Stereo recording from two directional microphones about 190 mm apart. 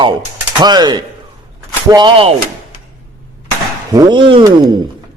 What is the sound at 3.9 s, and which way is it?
Speech, 20° right (ahead or behind).